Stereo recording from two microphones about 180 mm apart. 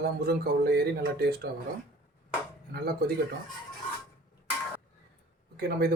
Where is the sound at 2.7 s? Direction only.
60° right (ahead or behind).